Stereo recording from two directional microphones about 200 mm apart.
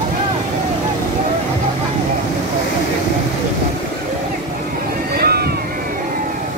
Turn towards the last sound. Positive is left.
turn(degrees=-50)  # may be behind; listen again after turning